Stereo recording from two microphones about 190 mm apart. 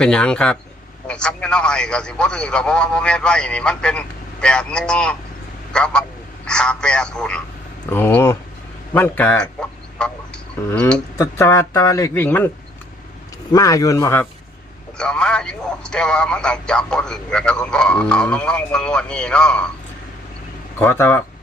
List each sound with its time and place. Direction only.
0.0 s a man's voice: 5° left (ahead or behind)
13.5 s speech: 20° left (ahead or behind)
20.7 s speech: 10° left (ahead or behind)